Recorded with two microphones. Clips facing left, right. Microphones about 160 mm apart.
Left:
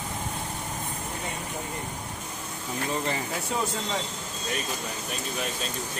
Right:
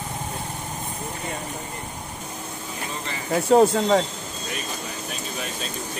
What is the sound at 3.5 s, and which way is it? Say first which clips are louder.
Speech: right 15 dB; 60° right (ahead or behind).